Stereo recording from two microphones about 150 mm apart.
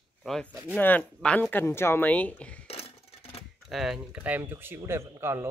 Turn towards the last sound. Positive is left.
turn(degrees=-15)  # may be behind; listen again after turning